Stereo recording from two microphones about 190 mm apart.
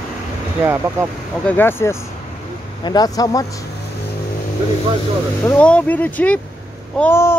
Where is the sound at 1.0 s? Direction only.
15° right (ahead or behind).